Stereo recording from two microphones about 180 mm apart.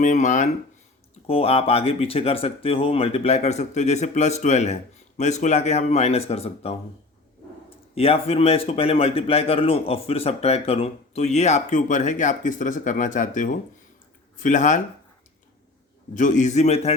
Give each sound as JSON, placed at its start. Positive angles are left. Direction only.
{"t": 0.0, "sound": "speech", "side_deg": 45}
{"t": 7.9, "sound": "speech", "side_deg": 35}
{"t": 16.1, "sound": "speech", "side_deg": 45}